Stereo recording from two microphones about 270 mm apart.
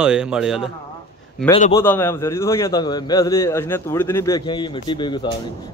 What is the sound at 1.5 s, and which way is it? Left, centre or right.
A man's voice, centre.